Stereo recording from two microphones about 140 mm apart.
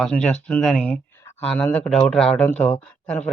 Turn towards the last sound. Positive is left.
turn(degrees=5)  # may be behind; listen again after turning